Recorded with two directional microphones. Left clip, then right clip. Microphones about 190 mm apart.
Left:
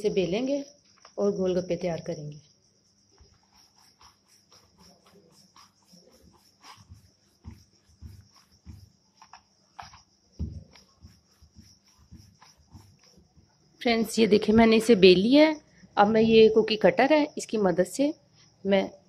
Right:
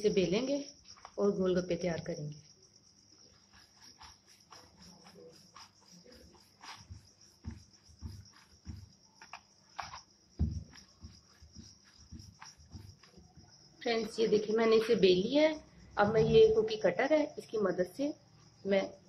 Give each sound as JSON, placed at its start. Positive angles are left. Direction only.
{"t": 0.0, "sound": "speech", "side_deg": 25}
{"t": 13.7, "sound": "a woman's voice", "side_deg": 40}